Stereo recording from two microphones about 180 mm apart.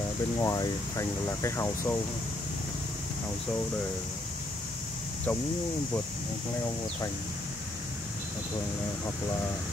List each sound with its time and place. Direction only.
0.4 s speech: 20° left (ahead or behind)